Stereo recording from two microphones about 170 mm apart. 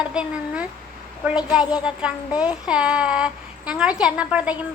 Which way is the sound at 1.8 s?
5° right (ahead or behind).